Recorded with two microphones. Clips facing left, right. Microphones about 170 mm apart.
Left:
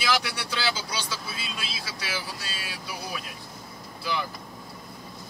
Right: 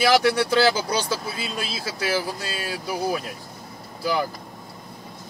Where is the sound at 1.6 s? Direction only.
40° right (ahead or behind).